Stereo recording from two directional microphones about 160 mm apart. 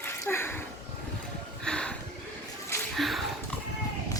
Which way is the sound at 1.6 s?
5° left (ahead or behind).